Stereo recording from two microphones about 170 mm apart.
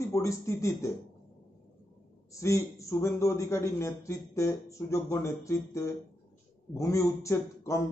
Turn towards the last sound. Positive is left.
turn(degrees=15)  # may be behind; listen again after turning